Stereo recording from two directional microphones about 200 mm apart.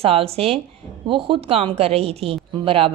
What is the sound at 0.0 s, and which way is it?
A woman's voice, 30° right (ahead or behind).